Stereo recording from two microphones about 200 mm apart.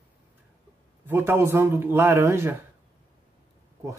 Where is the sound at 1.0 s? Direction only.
10° right (ahead or behind).